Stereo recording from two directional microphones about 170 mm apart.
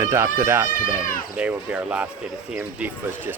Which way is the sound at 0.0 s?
15° right (ahead or behind).